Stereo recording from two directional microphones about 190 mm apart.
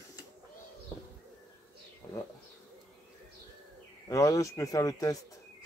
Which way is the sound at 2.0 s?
15° left (ahead or behind).